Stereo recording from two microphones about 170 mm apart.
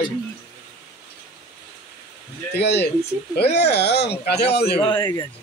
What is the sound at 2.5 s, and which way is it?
Speech, 80° left.